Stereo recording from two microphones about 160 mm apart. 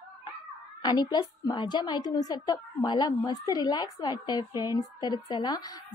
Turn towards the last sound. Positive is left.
turn(degrees=25)  # may be behind; listen again after turning